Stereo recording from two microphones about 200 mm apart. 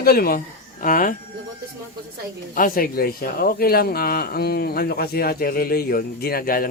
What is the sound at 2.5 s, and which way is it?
Speech, 45° left (ahead or behind).